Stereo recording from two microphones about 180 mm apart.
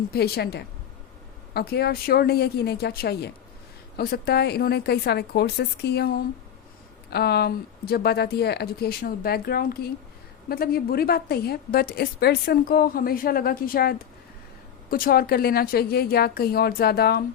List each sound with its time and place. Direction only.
0.1 s a woman's voice: 60° left (ahead or behind)